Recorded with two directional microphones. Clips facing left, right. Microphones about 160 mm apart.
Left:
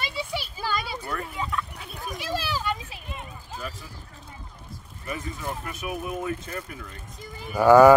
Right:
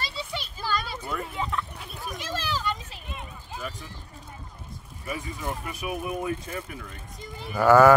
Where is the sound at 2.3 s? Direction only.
10° left (ahead or behind).